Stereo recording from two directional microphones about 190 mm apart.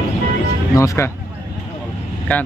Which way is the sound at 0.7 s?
15° left (ahead or behind).